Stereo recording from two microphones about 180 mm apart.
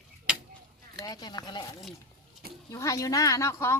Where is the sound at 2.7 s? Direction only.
20° left (ahead or behind).